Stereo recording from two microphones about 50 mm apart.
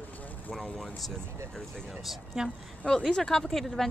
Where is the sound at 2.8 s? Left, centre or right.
Centre.